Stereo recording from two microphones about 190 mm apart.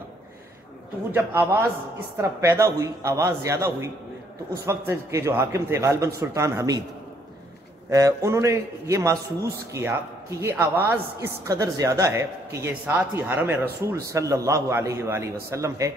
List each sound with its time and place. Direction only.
1.1 s a woman's voice: 10° right (ahead or behind)
7.9 s a woman's voice: 15° right (ahead or behind)